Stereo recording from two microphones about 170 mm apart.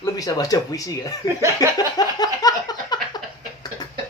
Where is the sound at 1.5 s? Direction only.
25° left (ahead or behind).